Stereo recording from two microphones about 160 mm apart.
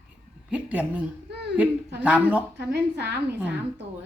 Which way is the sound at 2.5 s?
90° right.